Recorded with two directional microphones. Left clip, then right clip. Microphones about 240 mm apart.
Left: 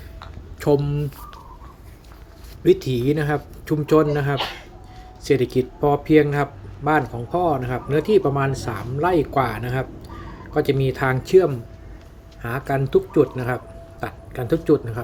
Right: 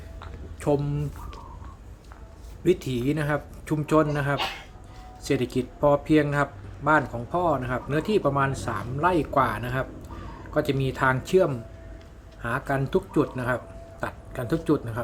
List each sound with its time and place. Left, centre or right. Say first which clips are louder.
0.6 s speech: left 6 dB; centre
2.6 s speech: left 6 dB; centre